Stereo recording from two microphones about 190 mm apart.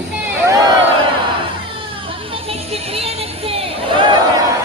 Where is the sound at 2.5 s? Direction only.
30° right (ahead or behind).